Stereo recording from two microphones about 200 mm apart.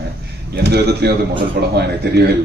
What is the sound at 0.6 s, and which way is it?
Speech, 55° right (ahead or behind).